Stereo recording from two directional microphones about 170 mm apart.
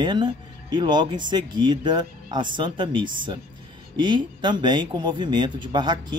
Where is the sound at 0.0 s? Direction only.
25° right (ahead or behind).